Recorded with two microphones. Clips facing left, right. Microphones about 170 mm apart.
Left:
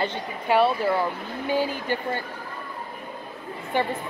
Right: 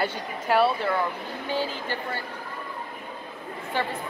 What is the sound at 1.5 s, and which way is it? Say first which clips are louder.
Speech: left 4 dB; 15° left (ahead or behind).